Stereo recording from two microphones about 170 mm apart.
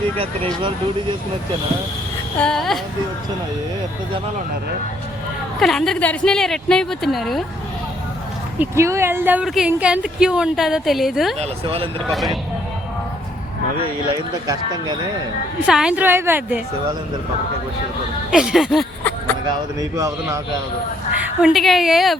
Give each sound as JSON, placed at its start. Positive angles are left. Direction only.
{"t": 2.4, "sound": "speech", "side_deg": 0}
{"t": 5.5, "sound": "speech", "side_deg": 5}
{"t": 8.5, "sound": "speech", "side_deg": -15}
{"t": 11.3, "sound": "speech", "side_deg": -35}
{"t": 12.0, "sound": "speech", "side_deg": 0}
{"t": 14.4, "sound": "speech", "side_deg": -20}
{"t": 15.6, "sound": "a woman's voice", "side_deg": -5}
{"t": 18.3, "sound": "speech", "side_deg": -5}
{"t": 19.5, "sound": "speech", "side_deg": -20}
{"t": 21.2, "sound": "speech", "side_deg": -5}